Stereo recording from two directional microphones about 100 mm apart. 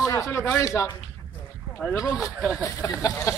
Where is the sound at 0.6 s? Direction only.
30° left (ahead or behind).